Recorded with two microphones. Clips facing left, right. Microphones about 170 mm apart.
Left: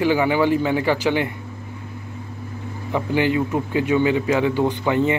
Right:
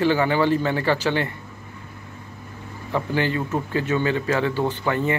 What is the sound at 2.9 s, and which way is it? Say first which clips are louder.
Speech: left 3 dB; 15° left (ahead or behind).